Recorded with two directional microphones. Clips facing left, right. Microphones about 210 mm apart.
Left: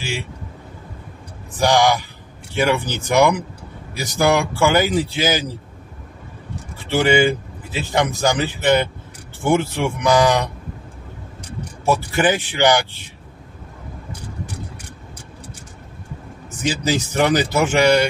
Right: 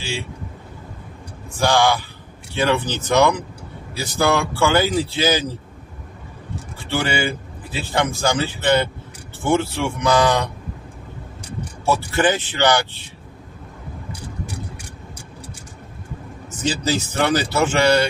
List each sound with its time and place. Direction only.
1.6 s a man's voice: 15° left (ahead or behind)
6.9 s a man's voice: 20° left (ahead or behind)
11.8 s a man's voice: 15° left (ahead or behind)
16.5 s a man's voice: 15° left (ahead or behind)